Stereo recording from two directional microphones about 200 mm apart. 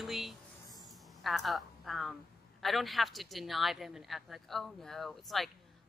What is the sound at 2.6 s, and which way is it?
Speech, centre (ahead or behind).